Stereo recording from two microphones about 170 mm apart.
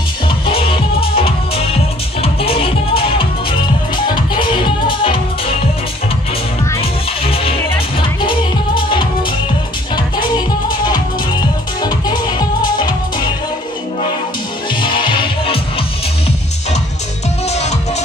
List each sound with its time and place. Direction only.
0.5 s music: 35° left (ahead or behind)
6.8 s music: 35° left (ahead or behind)
11.8 s music: 25° left (ahead or behind)
14.8 s music: 30° left (ahead or behind)
17.5 s music: 40° left (ahead or behind)